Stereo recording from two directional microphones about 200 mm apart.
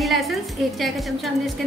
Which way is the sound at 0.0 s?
Centre (ahead or behind).